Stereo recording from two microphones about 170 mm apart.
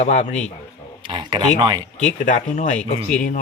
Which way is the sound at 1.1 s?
30° right (ahead or behind).